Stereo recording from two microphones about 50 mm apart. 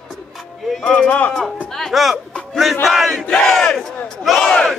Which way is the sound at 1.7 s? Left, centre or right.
Centre.